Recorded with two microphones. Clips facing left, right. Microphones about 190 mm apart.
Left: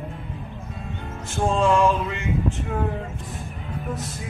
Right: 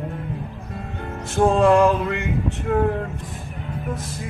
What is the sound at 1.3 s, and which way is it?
Music, 65° right (ahead or behind).